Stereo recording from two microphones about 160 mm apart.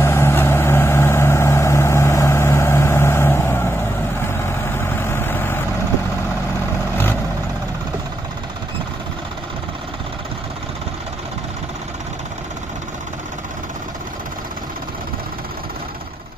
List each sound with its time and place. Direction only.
0.0 s vehicle: 15° left (ahead or behind)